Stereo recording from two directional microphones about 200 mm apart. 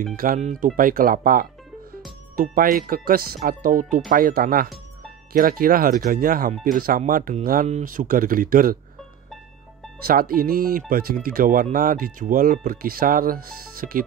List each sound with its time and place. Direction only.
0.1 s speech: 45° right (ahead or behind)
10.0 s speech: 45° right (ahead or behind)